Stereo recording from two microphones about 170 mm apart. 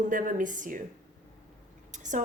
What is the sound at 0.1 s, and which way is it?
Speech, 50° right (ahead or behind).